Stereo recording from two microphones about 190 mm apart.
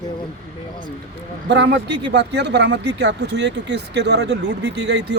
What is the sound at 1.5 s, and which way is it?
Speech, 65° right (ahead or behind).